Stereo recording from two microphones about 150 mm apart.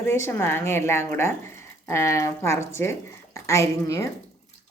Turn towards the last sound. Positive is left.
turn(degrees=20)  # may be behind; listen again after turning